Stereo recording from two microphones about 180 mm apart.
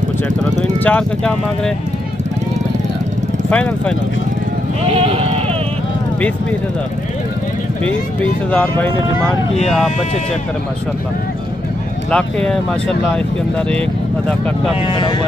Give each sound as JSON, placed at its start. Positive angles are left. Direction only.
{"t": 0.8, "sound": "speech", "side_deg": 5}
{"t": 3.4, "sound": "speech", "side_deg": 10}
{"t": 8.5, "sound": "speech", "side_deg": 10}
{"t": 12.1, "sound": "speech", "side_deg": 5}
{"t": 14.9, "sound": "speech", "side_deg": 25}